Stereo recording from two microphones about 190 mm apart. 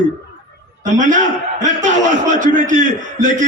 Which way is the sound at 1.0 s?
40° right (ahead or behind).